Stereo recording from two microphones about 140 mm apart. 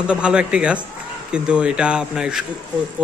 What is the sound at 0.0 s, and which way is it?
Speech, 5° right (ahead or behind).